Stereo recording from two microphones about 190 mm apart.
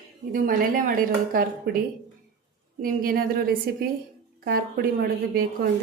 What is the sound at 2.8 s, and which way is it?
A woman's voice, 50° right (ahead or behind).